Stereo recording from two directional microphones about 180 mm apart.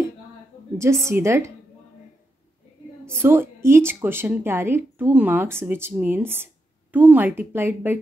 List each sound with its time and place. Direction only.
0.7 s speech: 15° right (ahead or behind)
3.2 s speech: 10° right (ahead or behind)